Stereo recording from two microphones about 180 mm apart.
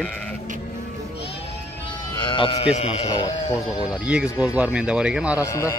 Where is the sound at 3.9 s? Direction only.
5° right (ahead or behind).